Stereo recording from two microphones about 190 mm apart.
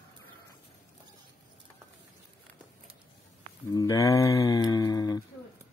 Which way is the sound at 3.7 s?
20° left (ahead or behind).